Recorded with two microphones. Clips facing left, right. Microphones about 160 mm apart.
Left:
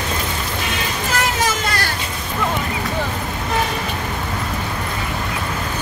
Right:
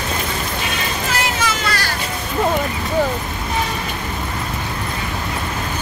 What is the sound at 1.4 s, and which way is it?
Vehicle, 40° left (ahead or behind).